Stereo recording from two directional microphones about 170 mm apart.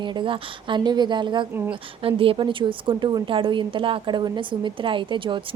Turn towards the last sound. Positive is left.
turn(degrees=-30)  # may be behind; listen again after turning